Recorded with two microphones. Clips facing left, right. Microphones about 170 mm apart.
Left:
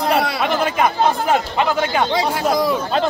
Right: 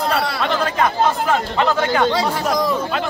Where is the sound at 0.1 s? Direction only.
15° left (ahead or behind).